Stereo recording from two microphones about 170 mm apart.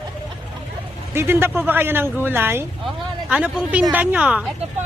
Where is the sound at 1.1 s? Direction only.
15° right (ahead or behind).